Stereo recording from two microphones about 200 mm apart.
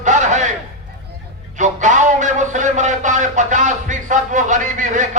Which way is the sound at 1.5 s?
35° right (ahead or behind).